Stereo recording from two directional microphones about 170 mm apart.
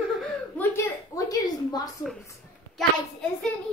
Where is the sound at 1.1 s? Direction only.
20° left (ahead or behind).